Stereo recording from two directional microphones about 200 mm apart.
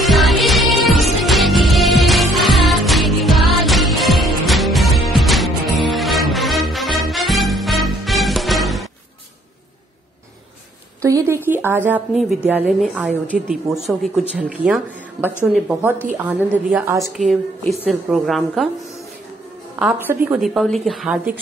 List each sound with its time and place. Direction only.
0.0 s music: centre (ahead or behind)
11.0 s a sound: 15° right (ahead or behind)
12.4 s a woman's voice: 5° right (ahead or behind)
19.8 s a woman's voice: 5° right (ahead or behind)